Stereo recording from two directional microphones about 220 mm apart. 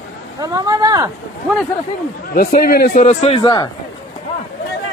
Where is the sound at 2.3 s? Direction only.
40° left (ahead or behind); by 3.7 s 20° left (ahead or behind).